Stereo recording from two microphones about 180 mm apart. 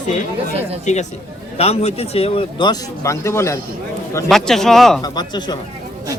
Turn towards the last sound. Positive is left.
turn(degrees=25)  # may be behind; listen again after turning